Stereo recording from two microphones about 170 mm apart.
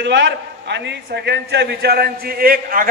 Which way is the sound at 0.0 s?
90° right.